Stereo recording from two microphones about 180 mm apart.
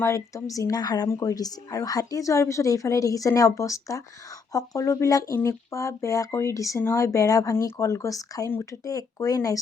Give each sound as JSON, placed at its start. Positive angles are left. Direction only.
{"t": 0.0, "sound": "speech", "side_deg": 15}